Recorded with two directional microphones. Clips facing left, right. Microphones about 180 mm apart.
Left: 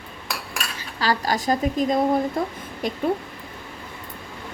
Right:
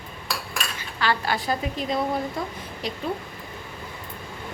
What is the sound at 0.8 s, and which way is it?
A woman's voice, 40° left (ahead or behind).